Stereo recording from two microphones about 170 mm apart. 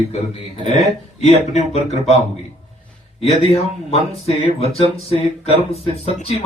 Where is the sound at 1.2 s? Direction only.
40° left (ahead or behind).